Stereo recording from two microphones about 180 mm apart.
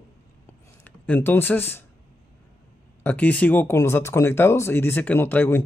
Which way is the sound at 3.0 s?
10° left (ahead or behind).